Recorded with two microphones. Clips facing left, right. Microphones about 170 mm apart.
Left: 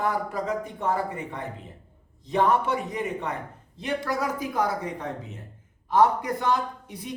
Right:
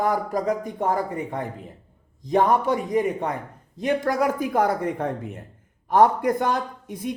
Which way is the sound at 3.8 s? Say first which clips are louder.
Right 6 dB; 50° right (ahead or behind).